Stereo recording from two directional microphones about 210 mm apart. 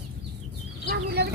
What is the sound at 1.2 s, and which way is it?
Chicken, 50° right (ahead or behind).